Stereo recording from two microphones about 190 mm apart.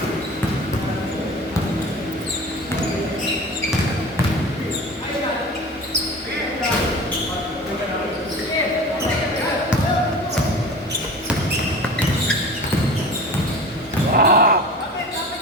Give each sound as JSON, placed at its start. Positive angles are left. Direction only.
{"t": 14.1, "sound": "basketball bounce", "side_deg": -50}